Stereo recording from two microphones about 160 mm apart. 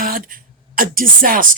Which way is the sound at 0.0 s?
60° right (ahead or behind).